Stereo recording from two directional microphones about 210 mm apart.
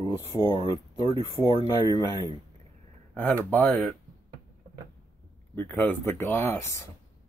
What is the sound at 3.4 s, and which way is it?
Speech, 10° left (ahead or behind).